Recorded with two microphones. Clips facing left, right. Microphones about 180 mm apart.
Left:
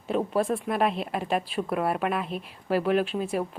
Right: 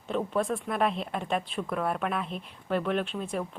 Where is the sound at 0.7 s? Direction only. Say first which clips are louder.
Left 2 dB; centre (ahead or behind).